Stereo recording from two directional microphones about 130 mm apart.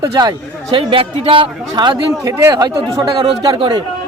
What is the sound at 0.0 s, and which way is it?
A man's voice, 30° right (ahead or behind).